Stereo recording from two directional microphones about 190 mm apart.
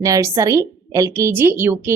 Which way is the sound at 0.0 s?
15° right (ahead or behind).